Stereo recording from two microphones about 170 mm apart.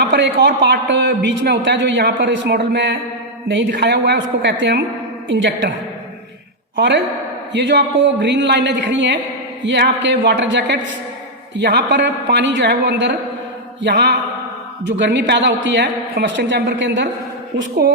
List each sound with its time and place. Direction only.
0.0 s a man's voice: 85° right
6.7 s a man's voice: 90° right
17.8 s speech: 65° right (ahead or behind)